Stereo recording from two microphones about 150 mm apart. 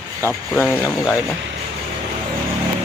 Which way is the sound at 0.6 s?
15° left (ahead or behind).